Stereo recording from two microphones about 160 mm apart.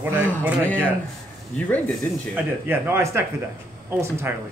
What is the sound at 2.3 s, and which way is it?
Speech, 10° right (ahead or behind).